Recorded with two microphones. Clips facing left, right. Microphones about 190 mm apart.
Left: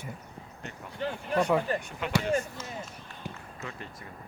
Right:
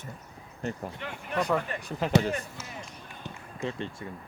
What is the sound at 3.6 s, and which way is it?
Speech, 30° right (ahead or behind).